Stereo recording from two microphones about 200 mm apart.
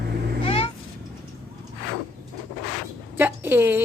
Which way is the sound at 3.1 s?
10° right (ahead or behind).